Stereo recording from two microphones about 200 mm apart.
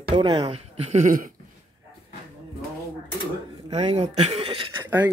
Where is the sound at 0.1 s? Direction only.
25° right (ahead or behind); by 1.3 s 40° right (ahead or behind).